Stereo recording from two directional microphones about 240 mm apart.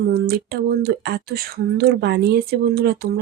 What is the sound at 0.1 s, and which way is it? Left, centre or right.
Speech, right.